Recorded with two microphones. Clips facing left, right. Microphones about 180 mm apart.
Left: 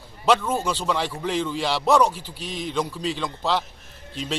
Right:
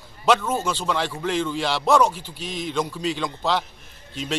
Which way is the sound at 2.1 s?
35° left (ahead or behind).